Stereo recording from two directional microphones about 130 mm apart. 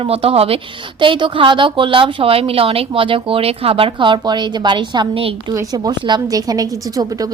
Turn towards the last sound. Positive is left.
turn(degrees=-30)  # may be behind; listen again after turning